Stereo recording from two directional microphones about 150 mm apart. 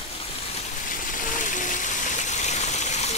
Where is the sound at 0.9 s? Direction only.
65° left (ahead or behind).